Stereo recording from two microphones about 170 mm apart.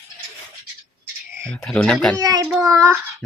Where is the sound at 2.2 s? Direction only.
20° right (ahead or behind).